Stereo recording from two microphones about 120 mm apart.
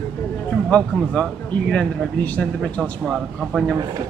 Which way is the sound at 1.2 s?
10° left (ahead or behind).